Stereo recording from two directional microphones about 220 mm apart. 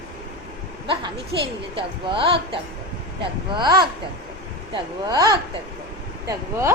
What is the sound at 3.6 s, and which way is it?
A woman's voice, 20° right (ahead or behind).